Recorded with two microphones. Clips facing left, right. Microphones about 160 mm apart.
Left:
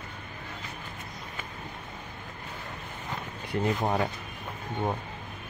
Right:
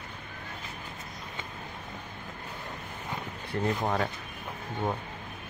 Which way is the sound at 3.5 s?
15° left (ahead or behind).